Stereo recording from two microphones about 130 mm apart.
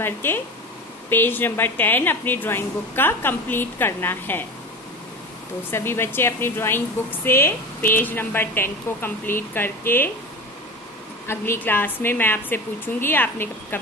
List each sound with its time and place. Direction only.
0.0 s a woman's voice: 15° left (ahead or behind)
5.7 s a woman's voice: 20° left (ahead or behind)
11.2 s a woman's voice: 20° left (ahead or behind)